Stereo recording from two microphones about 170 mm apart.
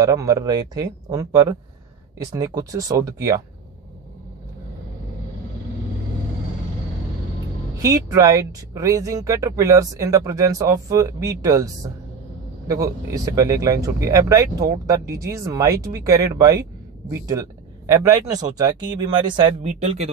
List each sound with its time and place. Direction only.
0.0 s speech: 20° right (ahead or behind)
7.8 s speech: 20° right (ahead or behind)
17.8 s speech: 20° right (ahead or behind)